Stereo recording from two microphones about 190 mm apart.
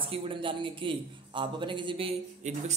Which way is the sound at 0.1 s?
25° right (ahead or behind).